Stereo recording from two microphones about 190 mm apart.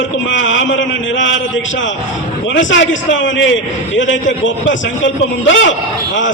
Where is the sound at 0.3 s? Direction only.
80° left.